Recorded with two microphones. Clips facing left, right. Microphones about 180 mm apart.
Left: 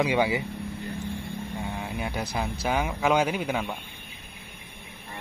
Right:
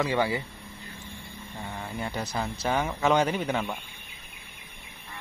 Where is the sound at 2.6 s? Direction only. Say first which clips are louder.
Even; 5° left (ahead or behind).